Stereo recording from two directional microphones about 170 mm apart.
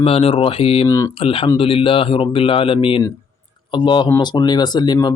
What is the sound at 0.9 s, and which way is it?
Speech, 20° left (ahead or behind).